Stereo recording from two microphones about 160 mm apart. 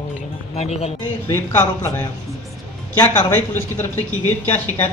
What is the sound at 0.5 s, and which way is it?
Speech, 40° left (ahead or behind).